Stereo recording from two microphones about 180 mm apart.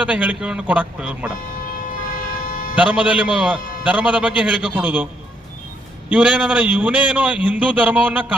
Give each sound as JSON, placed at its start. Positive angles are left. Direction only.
{"t": 0.0, "sound": "a man's voice", "side_deg": -10}
{"t": 1.9, "sound": "vehicle", "side_deg": 50}
{"t": 2.7, "sound": "a man's voice", "side_deg": -5}
{"t": 6.1, "sound": "a man's voice", "side_deg": -10}